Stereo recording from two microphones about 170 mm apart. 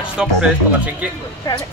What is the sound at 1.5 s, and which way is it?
Speech, 20° left (ahead or behind).